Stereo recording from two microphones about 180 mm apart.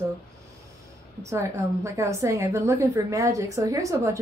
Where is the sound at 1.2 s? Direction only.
15° right (ahead or behind).